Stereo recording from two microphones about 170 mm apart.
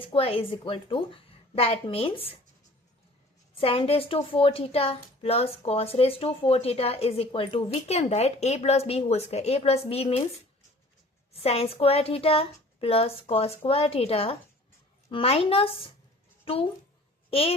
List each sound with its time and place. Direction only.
0.0 s a woman's voice: 35° left (ahead or behind)
3.6 s a woman's voice: 35° left (ahead or behind)
11.3 s a woman's voice: 35° left (ahead or behind)